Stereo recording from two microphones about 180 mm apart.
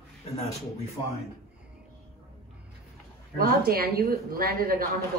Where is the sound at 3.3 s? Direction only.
55° right (ahead or behind).